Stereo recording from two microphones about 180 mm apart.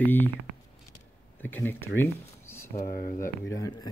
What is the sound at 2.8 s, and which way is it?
Speech, 55° left (ahead or behind).